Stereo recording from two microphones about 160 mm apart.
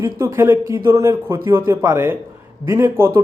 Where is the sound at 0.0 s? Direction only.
15° right (ahead or behind).